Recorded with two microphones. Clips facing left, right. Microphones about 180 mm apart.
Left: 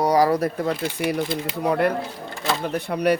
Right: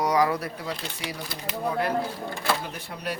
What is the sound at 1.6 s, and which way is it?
Speech, 70° left (ahead or behind).